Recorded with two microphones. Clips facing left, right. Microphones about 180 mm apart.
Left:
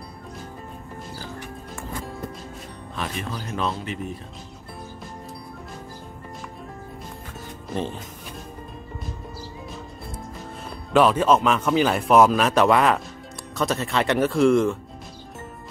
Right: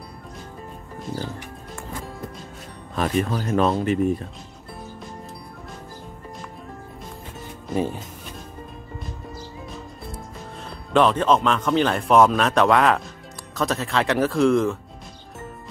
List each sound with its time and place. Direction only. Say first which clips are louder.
3.0 s speech: right 8 dB; 50° right (ahead or behind)
7.7 s speech: right 4 dB; 10° right (ahead or behind)
10.9 s speech: left 1 dB; 5° left (ahead or behind)